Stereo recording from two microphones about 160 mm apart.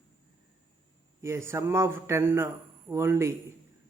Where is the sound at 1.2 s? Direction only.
15° right (ahead or behind).